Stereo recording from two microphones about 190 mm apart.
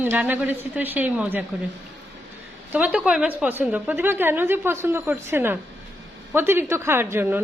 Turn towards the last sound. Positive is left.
turn(degrees=-10)  # may be behind; listen again after turning